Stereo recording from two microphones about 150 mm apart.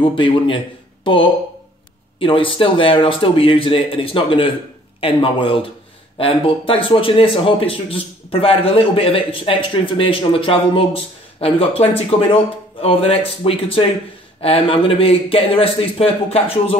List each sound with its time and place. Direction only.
0.0 s a man's voice: 35° left (ahead or behind)